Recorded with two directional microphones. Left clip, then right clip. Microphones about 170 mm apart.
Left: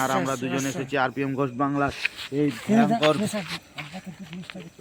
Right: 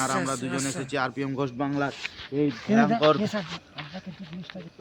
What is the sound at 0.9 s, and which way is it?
Speech, 30° left (ahead or behind).